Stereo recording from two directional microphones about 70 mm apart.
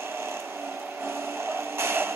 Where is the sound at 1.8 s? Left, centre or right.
Right.